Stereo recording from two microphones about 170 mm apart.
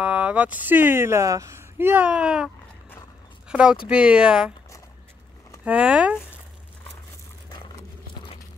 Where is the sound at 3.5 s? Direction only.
5° right (ahead or behind).